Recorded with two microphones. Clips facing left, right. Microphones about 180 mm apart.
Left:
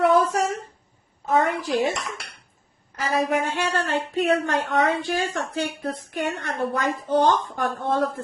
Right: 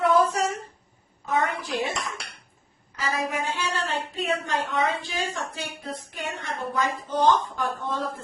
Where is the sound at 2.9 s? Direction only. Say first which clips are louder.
Left 6 dB; 65° left (ahead or behind).